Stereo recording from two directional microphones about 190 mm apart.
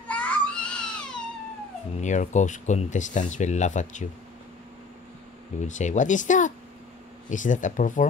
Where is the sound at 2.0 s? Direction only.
40° left (ahead or behind).